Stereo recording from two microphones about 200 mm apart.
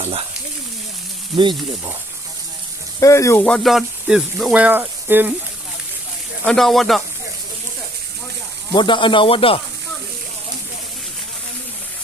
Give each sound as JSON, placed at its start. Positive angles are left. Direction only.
{"t": 0.0, "sound": "speech", "side_deg": -30}
{"t": 1.4, "sound": "speech", "side_deg": -20}
{"t": 3.0, "sound": "speech", "side_deg": 15}
{"t": 6.4, "sound": "speech", "side_deg": 5}
{"t": 8.7, "sound": "speech", "side_deg": 25}